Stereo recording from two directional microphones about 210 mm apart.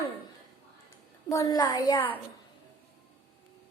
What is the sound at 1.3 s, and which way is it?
Speech, 15° left (ahead or behind).